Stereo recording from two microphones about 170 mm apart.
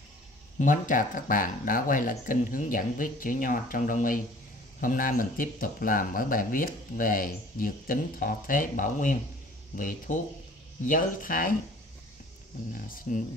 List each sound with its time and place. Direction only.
0.6 s speech: 50° left (ahead or behind)
12.7 s speech: 55° left (ahead or behind)